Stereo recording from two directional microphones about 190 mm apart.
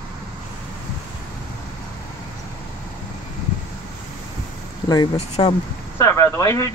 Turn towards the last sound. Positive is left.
turn(degrees=15)  # may be behind; listen again after turning